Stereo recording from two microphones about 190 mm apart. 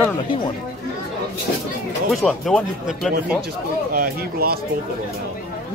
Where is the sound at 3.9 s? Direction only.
55° right (ahead or behind).